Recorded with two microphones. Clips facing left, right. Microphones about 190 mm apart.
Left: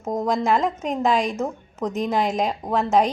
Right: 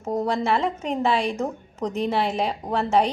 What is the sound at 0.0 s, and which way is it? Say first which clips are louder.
A woman's voice: left 1 dB; 10° left (ahead or behind).